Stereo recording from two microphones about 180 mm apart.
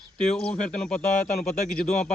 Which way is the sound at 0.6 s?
5° left (ahead or behind).